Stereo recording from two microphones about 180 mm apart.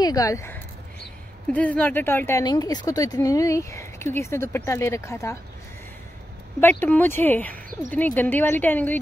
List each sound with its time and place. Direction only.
0.0 s speech: 20° left (ahead or behind)
6.6 s speech: 10° left (ahead or behind)